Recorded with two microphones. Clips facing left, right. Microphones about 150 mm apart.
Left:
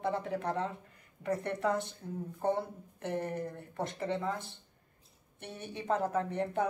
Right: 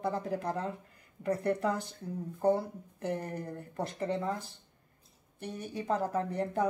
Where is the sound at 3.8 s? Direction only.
35° right (ahead or behind).